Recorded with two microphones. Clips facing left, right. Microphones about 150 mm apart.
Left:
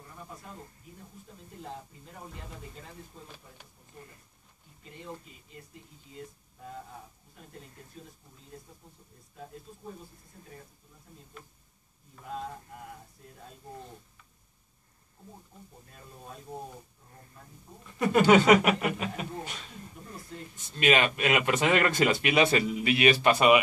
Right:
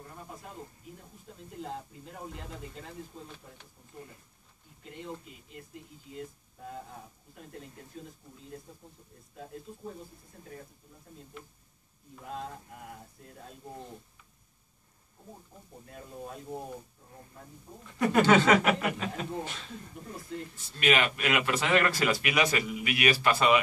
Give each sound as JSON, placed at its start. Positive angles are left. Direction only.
{"t": 17.9, "sound": "speech", "side_deg": 15}